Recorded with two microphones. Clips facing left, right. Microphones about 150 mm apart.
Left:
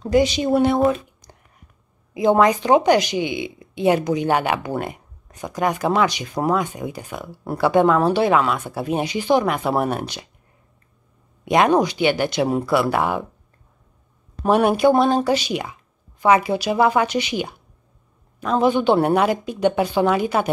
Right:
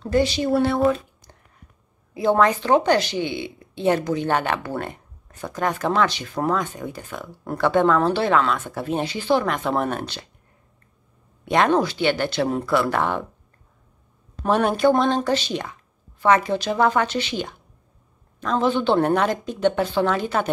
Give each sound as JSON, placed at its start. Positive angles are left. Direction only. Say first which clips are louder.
{"t": 0.0, "sound": "speech", "louder": "left 3 dB", "side_deg": 15}
{"t": 11.4, "sound": "speech", "louder": "left 2 dB", "side_deg": 15}
{"t": 14.4, "sound": "speech", "louder": "left 3 dB", "side_deg": 10}